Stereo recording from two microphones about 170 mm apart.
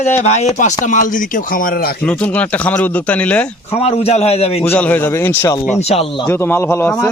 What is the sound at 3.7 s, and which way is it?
Speech, 35° left (ahead or behind).